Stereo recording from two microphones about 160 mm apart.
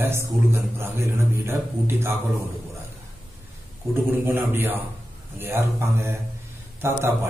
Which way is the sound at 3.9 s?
15° right (ahead or behind).